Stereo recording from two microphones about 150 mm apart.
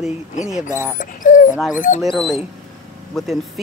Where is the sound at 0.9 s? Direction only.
65° left (ahead or behind).